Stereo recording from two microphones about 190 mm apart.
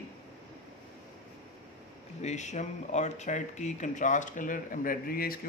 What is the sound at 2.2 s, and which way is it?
Speech, 40° left (ahead or behind).